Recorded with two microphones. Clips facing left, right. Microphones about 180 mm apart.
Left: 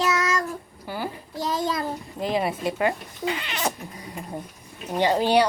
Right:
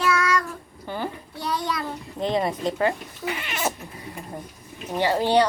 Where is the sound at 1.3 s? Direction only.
45° left (ahead or behind).